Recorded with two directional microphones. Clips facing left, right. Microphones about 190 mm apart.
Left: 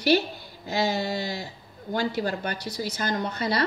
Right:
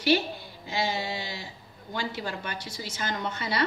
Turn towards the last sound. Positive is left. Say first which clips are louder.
# left 3 dB
turn(degrees=35)  # may be behind; listen again after turning